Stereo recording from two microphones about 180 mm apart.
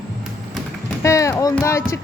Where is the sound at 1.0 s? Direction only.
15° left (ahead or behind).